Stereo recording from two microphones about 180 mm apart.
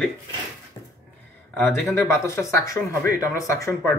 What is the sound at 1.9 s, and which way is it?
Speech, 15° left (ahead or behind).